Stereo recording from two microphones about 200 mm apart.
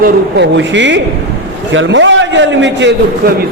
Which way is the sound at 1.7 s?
70° right (ahead or behind).